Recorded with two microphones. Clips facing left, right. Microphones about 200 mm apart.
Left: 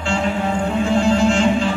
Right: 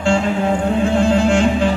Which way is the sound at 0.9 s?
55° right (ahead or behind).